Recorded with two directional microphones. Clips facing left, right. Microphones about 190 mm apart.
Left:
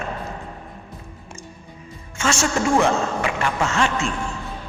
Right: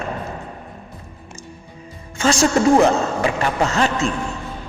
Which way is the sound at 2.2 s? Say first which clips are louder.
Right 5 dB; 35° right (ahead or behind).